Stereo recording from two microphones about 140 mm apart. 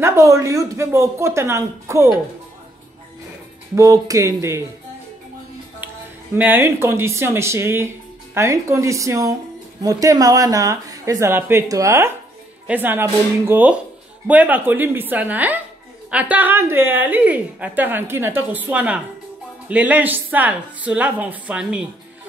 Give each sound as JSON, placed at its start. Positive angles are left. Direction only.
{"t": 0.0, "sound": "speech", "side_deg": -20}
{"t": 3.7, "sound": "speech", "side_deg": -25}
{"t": 6.3, "sound": "a woman's voice", "side_deg": -15}